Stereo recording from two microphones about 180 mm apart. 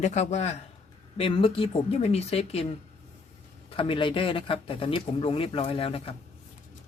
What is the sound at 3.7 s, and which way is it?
Speech, 30° left (ahead or behind).